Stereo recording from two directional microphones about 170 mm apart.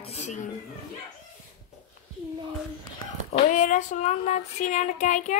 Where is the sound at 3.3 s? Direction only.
50° left (ahead or behind).